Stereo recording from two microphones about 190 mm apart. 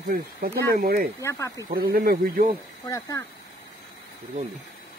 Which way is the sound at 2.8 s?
15° left (ahead or behind).